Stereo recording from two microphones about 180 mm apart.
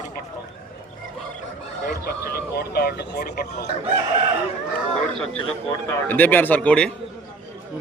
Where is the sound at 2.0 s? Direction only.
60° left (ahead or behind).